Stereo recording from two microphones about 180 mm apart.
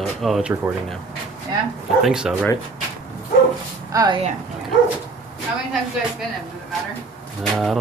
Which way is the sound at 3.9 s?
20° right (ahead or behind).